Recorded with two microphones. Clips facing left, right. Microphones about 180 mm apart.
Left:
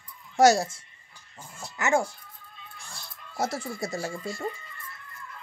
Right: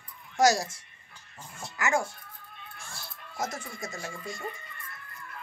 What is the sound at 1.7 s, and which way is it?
Speech, 25° left (ahead or behind).